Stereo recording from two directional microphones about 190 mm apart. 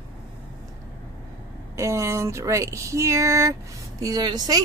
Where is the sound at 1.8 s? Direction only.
15° right (ahead or behind).